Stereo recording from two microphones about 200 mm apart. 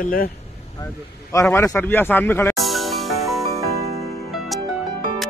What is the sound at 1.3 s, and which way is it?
A man's voice, 15° left (ahead or behind).